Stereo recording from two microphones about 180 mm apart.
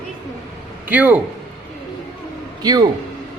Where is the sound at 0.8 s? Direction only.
10° right (ahead or behind).